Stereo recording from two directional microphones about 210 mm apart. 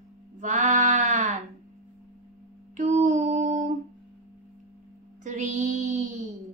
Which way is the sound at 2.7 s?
35° right (ahead or behind).